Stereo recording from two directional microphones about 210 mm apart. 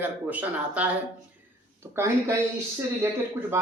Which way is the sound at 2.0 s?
10° right (ahead or behind).